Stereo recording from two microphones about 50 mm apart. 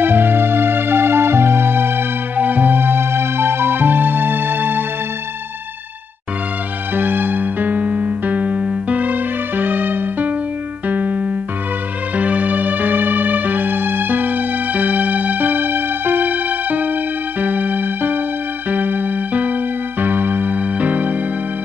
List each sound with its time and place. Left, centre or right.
0.0 s music: right
6.9 s music: right
10.9 s keyboard: right
12.2 s music: right